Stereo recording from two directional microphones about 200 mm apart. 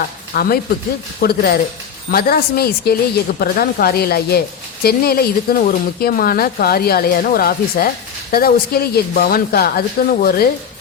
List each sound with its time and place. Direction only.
0.3 s a woman's voice: 50° left (ahead or behind)